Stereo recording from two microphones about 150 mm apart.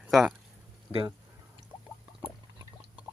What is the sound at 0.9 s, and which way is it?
Speech, 35° right (ahead or behind).